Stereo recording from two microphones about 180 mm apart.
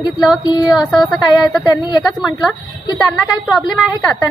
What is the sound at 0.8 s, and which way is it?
Speech, centre (ahead or behind).